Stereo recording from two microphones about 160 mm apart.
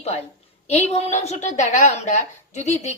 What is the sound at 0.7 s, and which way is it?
A woman's voice, 45° left (ahead or behind).